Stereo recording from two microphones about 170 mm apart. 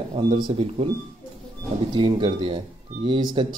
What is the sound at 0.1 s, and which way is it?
Speech, 30° right (ahead or behind).